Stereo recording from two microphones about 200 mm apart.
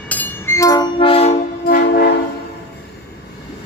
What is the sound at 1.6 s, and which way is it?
Train, 45° left (ahead or behind).